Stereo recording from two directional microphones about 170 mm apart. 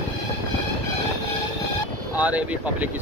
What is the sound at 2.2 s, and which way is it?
Speech, 10° right (ahead or behind).